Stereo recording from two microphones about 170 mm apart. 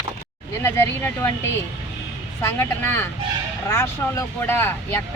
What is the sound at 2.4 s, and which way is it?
Speech, 15° left (ahead or behind).